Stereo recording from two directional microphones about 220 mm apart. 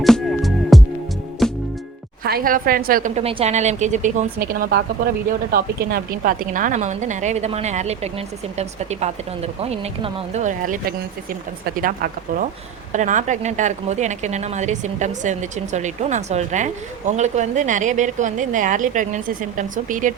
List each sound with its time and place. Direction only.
0.0 s music: centre (ahead or behind)
2.2 s speech: 40° right (ahead or behind)
11.8 s speech: 40° right (ahead or behind)